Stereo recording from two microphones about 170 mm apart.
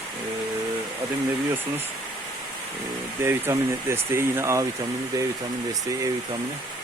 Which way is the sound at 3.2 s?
15° right (ahead or behind).